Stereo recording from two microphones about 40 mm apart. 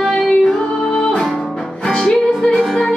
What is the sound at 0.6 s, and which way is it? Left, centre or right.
Music, left.